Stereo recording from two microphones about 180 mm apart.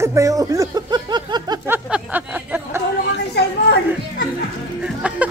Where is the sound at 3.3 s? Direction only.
65° left (ahead or behind).